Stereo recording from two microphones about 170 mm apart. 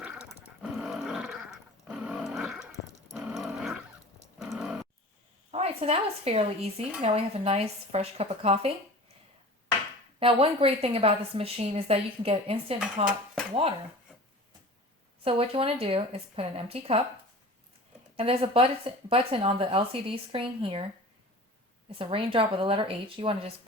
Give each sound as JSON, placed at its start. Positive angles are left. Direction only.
{"t": 0.0, "sound": "dog", "side_deg": -5}
{"t": 0.6, "sound": "roar", "side_deg": 0}
{"t": 3.1, "sound": "dog", "side_deg": -5}
{"t": 4.4, "sound": "a sound", "side_deg": 0}
{"t": 5.5, "sound": "a woman's voice", "side_deg": -35}
{"t": 10.2, "sound": "a woman's voice", "side_deg": -35}
{"t": 15.2, "sound": "a woman's voice", "side_deg": -35}
{"t": 18.2, "sound": "a woman's voice", "side_deg": -35}
{"t": 21.9, "sound": "a woman's voice", "side_deg": -30}